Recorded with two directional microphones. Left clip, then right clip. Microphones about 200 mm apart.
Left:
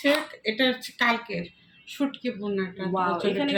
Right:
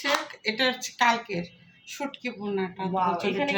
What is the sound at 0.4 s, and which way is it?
A woman's voice, 55° right (ahead or behind).